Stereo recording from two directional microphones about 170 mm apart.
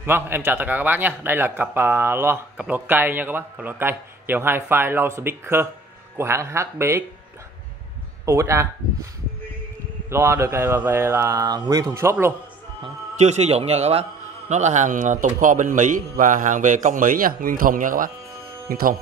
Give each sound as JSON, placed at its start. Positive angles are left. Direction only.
{"t": 0.0, "sound": "a man's voice", "side_deg": -15}
{"t": 8.3, "sound": "a man's voice", "side_deg": -15}
{"t": 10.0, "sound": "a man's voice", "side_deg": -15}
{"t": 13.2, "sound": "a man's voice", "side_deg": -40}